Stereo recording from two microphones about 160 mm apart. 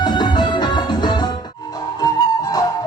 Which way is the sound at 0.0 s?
25° left (ahead or behind).